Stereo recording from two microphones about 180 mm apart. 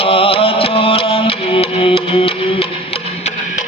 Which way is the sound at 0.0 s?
30° left (ahead or behind).